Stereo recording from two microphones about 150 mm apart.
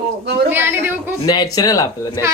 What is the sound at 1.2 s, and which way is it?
Speech, 25° left (ahead or behind).